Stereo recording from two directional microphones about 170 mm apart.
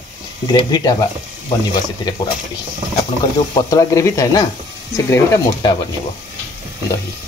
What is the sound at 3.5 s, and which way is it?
Speech, 20° left (ahead or behind).